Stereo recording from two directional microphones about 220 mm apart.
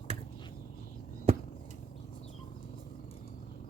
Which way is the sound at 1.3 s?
25° right (ahead or behind).